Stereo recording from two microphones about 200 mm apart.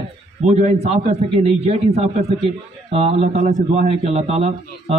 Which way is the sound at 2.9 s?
30° right (ahead or behind).